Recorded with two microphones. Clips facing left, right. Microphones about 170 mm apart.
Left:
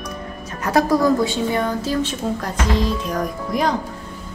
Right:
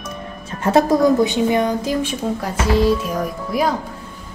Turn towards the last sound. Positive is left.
turn(degrees=-5)  # may be behind; listen again after turning